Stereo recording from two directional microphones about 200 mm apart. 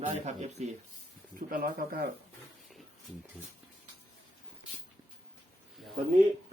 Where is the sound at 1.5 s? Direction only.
45° right (ahead or behind).